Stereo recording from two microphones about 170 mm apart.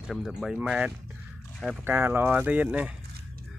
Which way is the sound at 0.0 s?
5° right (ahead or behind).